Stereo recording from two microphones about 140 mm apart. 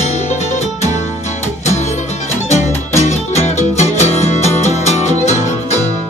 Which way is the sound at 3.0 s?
55° left (ahead or behind).